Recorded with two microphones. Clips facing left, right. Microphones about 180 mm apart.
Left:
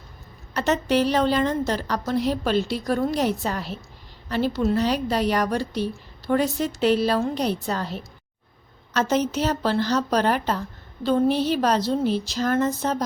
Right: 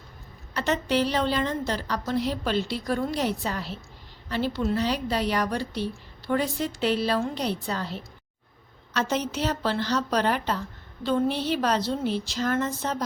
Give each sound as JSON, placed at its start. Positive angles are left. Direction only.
{"t": 0.5, "sound": "a woman's voice", "side_deg": 45}